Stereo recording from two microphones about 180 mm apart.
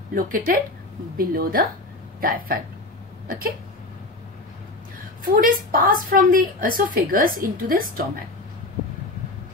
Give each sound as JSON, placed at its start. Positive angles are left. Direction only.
{"t": 0.1, "sound": "a woman's voice", "side_deg": -50}
{"t": 5.2, "sound": "a woman's voice", "side_deg": -50}